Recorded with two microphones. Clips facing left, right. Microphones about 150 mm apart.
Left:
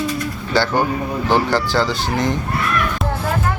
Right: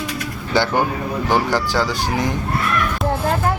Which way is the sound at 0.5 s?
15° right (ahead or behind).